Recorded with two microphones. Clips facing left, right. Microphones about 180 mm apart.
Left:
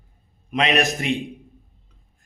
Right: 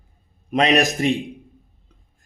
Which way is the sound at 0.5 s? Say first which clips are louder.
Right 3 dB; 40° right (ahead or behind).